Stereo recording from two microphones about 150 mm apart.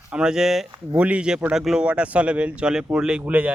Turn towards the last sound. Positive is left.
turn(degrees=-10)  # may be behind; listen again after turning